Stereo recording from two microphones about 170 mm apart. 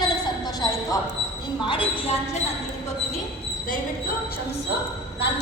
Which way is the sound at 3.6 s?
50° left (ahead or behind).